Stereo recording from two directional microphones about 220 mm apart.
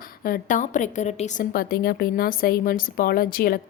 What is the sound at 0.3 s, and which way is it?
A woman's voice, 35° left (ahead or behind).